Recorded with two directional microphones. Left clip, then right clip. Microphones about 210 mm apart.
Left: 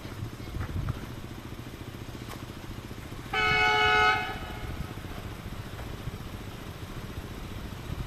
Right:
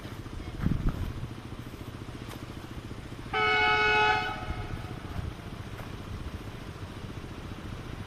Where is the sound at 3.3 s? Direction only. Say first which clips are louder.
Left 1 dB; 50° left (ahead or behind).